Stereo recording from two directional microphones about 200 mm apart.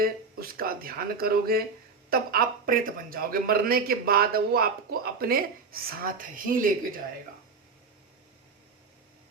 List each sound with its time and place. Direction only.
0.0 s speech: 45° right (ahead or behind)